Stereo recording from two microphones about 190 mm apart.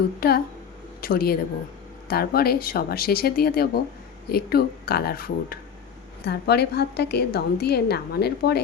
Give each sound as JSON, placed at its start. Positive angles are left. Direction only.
{"t": 0.2, "sound": "a woman's voice", "side_deg": 55}